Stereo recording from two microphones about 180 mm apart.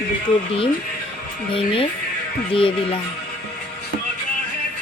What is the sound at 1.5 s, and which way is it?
Speech, 30° left (ahead or behind).